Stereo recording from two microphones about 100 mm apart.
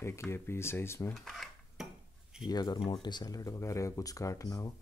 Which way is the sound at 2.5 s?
40° left (ahead or behind).